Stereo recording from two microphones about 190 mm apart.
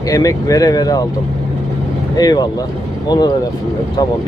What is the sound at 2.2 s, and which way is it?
Speech, 20° left (ahead or behind).